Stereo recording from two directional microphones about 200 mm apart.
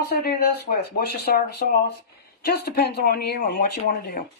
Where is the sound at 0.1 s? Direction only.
50° left (ahead or behind).